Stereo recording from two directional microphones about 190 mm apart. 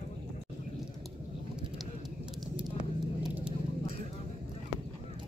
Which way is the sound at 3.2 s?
5° right (ahead or behind).